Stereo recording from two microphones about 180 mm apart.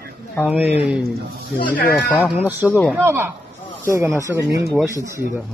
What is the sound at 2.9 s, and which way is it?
Speech, 15° right (ahead or behind).